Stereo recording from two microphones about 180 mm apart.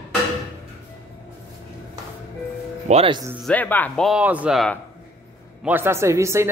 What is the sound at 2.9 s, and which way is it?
Speech, 30° right (ahead or behind).